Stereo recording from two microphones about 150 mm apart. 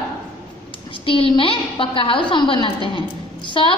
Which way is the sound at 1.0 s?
35° left (ahead or behind).